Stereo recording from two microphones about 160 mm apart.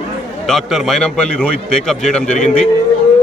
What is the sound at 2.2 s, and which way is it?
Speech, 50° left (ahead or behind).